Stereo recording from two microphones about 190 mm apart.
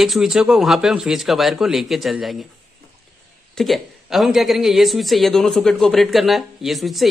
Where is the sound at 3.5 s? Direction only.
Centre (ahead or behind).